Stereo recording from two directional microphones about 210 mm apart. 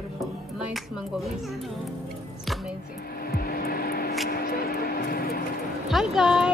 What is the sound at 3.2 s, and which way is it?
Vehicle, 45° left (ahead or behind).